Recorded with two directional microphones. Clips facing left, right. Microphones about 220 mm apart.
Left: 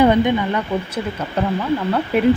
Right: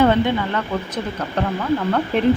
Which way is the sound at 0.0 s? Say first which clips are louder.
Left 2 dB; 15° left (ahead or behind).